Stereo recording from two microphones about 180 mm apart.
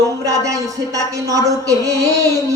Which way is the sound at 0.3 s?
20° right (ahead or behind).